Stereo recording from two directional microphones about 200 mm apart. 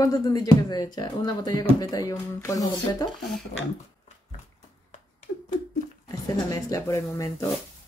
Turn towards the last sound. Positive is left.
turn(degrees=15)  # may be behind; listen again after turning